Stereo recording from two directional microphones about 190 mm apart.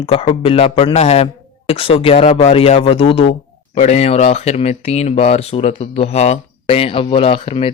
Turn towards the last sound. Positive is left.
turn(degrees=30)  # may be behind; listen again after turning